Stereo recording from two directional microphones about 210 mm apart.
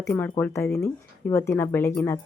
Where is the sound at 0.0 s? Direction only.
10° left (ahead or behind).